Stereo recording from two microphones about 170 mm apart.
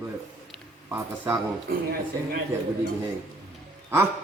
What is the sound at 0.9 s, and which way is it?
Speech, 15° right (ahead or behind).